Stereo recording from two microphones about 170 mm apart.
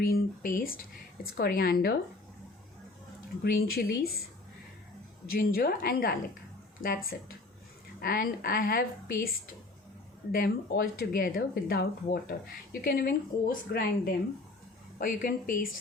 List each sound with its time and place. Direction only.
0.0 s speech: 60° left (ahead or behind)
3.4 s speech: 65° left (ahead or behind)
5.3 s speech: 60° left (ahead or behind)
10.3 s speech: 60° left (ahead or behind)